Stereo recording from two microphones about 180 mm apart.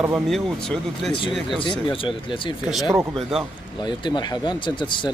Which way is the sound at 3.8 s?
25° left (ahead or behind).